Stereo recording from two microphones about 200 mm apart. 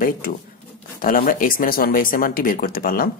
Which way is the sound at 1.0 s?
45° left (ahead or behind).